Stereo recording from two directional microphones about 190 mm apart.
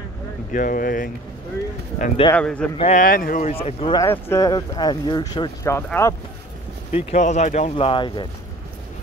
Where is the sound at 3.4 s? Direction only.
35° left (ahead or behind).